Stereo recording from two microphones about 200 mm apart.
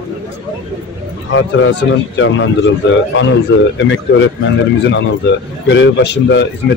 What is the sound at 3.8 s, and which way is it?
Speech, 65° left (ahead or behind).